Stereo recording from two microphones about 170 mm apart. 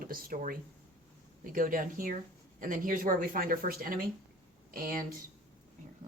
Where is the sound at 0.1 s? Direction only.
55° right (ahead or behind).